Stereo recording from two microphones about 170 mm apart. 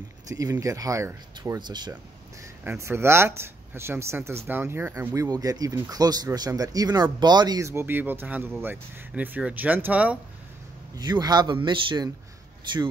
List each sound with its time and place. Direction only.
0.3 s speech: 20° right (ahead or behind)
2.6 s speech: 10° right (ahead or behind)
11.0 s speech: 25° right (ahead or behind)